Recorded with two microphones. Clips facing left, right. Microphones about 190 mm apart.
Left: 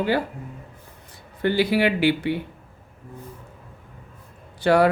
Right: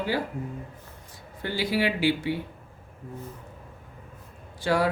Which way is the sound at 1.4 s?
65° left (ahead or behind).